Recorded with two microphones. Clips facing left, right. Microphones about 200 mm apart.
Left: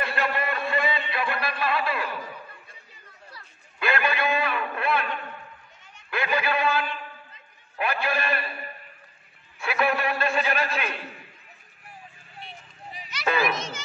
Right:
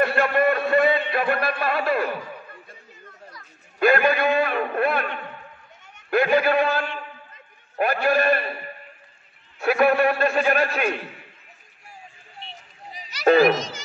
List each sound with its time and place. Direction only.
0.0 s a sound: 50° right (ahead or behind)
3.8 s a man's voice: 45° right (ahead or behind)
9.6 s a man's voice: 45° right (ahead or behind)
12.9 s children playing: 40° right (ahead or behind)